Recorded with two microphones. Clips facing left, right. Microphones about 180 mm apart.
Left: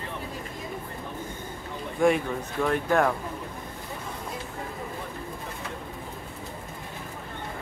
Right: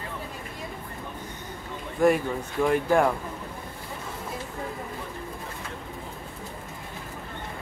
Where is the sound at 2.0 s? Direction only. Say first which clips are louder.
Right 1 dB; 5° right (ahead or behind).